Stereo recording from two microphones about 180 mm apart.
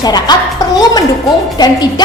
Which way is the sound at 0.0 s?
20° left (ahead or behind).